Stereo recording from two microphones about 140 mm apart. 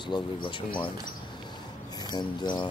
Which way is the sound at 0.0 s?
35° left (ahead or behind).